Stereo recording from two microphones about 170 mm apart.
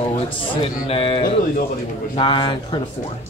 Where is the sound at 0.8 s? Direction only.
35° left (ahead or behind).